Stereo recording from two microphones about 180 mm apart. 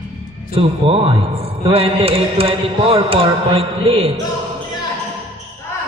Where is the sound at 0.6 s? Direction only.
30° right (ahead or behind).